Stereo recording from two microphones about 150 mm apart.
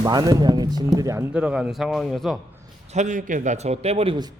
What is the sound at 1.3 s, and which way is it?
Speech, 5° right (ahead or behind).